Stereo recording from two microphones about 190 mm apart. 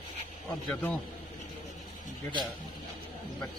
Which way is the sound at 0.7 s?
5° left (ahead or behind).